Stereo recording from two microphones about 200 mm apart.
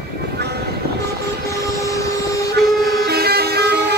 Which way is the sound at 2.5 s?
50° right (ahead or behind).